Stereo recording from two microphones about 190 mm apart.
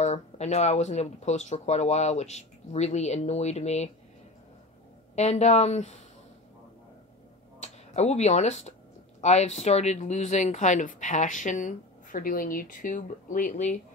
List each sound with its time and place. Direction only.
0.0 s speech: 35° left (ahead or behind)
5.1 s speech: 35° left (ahead or behind)
7.6 s speech: 35° left (ahead or behind)